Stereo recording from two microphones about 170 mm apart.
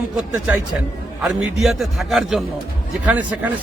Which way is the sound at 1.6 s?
Centre (ahead or behind).